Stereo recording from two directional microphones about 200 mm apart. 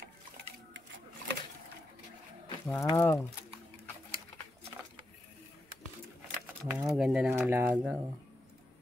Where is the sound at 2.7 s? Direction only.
15° left (ahead or behind).